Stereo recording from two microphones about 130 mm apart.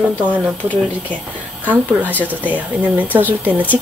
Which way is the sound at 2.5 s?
10° right (ahead or behind).